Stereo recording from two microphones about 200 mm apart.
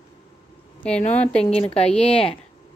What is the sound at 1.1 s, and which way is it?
Speech, 5° left (ahead or behind).